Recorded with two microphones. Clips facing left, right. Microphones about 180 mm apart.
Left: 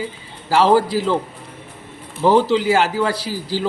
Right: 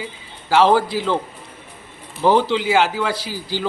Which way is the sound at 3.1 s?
35° left (ahead or behind).